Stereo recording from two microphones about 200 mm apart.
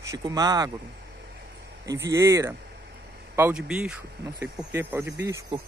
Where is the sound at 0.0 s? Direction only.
15° right (ahead or behind).